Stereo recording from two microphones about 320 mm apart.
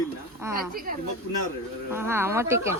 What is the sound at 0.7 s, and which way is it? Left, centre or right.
Speech, right.